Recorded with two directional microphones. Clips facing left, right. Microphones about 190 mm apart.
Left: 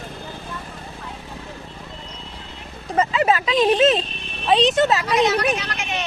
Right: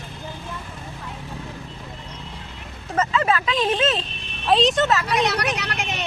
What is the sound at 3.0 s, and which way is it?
Speech, 15° left (ahead or behind).